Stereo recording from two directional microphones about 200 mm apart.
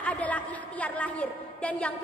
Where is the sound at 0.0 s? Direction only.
5° left (ahead or behind).